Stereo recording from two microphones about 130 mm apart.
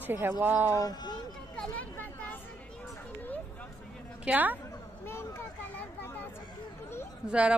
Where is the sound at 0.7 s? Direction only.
30° left (ahead or behind).